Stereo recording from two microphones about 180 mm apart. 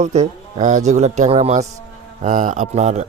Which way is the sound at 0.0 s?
40° right (ahead or behind).